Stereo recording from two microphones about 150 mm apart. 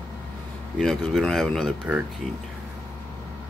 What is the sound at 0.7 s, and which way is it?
Speech, centre (ahead or behind).